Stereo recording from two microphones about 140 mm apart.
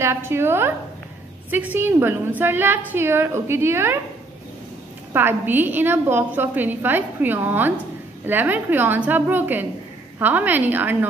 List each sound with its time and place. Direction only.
0.0 s a woman's voice: 15° right (ahead or behind)
5.1 s a woman's voice: 15° right (ahead or behind)